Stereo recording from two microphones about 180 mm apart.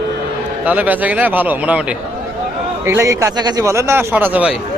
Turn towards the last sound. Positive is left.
turn(degrees=-5)  # may be behind; listen again after turning